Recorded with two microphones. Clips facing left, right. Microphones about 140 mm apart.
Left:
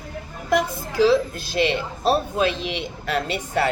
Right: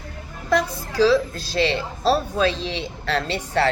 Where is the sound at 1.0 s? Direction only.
20° left (ahead or behind).